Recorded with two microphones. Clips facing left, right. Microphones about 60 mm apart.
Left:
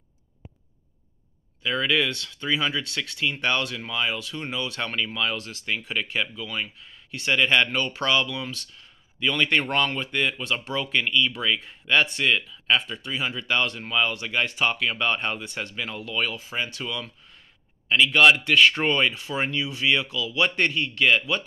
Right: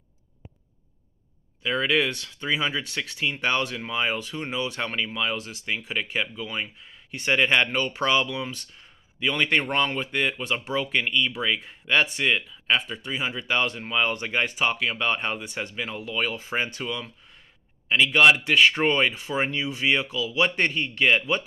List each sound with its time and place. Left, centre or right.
1.6 s speech: centre
14.0 s speech: right
14.5 s speech: centre
16.3 s speech: right
16.8 s speech: centre